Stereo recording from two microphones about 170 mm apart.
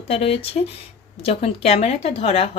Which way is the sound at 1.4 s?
40° left (ahead or behind).